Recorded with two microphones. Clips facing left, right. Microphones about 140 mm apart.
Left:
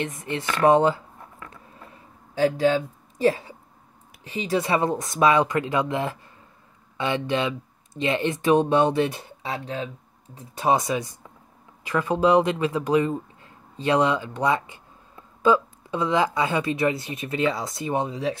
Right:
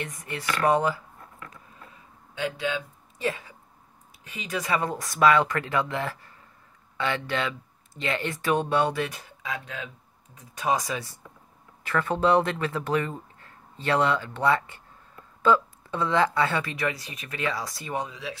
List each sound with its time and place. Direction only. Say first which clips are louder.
0.0 s speech: left 5 dB; 25° left (ahead or behind)
2.3 s speech: left 9 dB; 40° left (ahead or behind)
18.1 s speech: left 10 dB; 40° left (ahead or behind)